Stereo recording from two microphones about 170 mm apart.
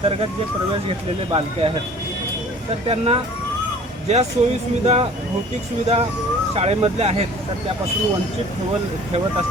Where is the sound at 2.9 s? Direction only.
35° right (ahead or behind).